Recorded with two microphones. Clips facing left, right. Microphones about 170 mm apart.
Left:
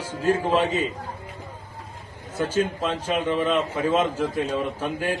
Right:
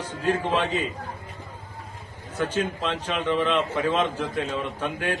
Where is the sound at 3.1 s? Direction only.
40° left (ahead or behind).